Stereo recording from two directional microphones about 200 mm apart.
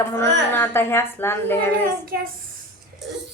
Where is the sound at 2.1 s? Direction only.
45° right (ahead or behind).